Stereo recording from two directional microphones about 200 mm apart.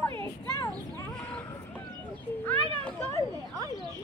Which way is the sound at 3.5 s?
20° right (ahead or behind).